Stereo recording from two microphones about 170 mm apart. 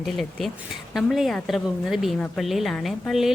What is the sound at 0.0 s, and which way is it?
A woman's voice, centre (ahead or behind).